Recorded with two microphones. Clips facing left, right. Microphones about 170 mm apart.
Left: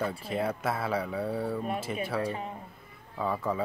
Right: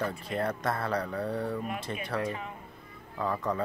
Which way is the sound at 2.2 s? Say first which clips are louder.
Right 2 dB; 35° left (ahead or behind).